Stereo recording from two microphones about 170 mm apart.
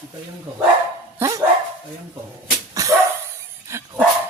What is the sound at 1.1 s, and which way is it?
Dog, 20° right (ahead or behind).